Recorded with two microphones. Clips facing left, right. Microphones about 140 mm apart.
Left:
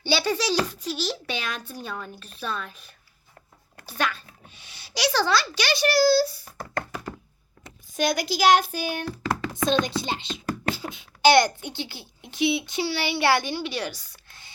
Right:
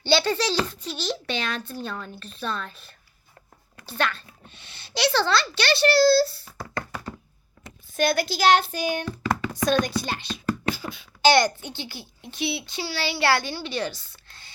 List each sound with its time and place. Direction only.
0.0 s a child's voice: 10° left (ahead or behind)
7.9 s a child's voice: 15° left (ahead or behind)
9.6 s a child's voice: 25° left (ahead or behind)